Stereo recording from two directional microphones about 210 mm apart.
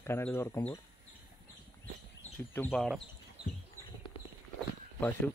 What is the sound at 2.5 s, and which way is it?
Speech, 10° left (ahead or behind).